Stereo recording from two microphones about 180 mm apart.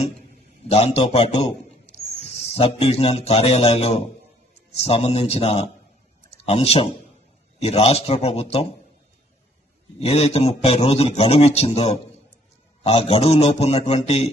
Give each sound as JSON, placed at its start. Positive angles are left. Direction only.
{"t": 0.7, "sound": "a man's voice", "side_deg": 35}
{"t": 10.0, "sound": "a man's voice", "side_deg": 35}